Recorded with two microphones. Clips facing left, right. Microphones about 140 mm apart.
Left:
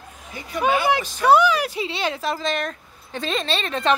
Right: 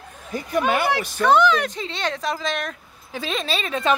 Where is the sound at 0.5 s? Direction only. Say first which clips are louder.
Even; 55° right (ahead or behind).